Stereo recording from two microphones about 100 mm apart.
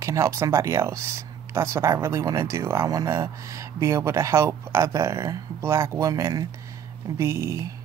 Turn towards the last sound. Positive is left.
turn(degrees=-30)  # may be behind; listen again after turning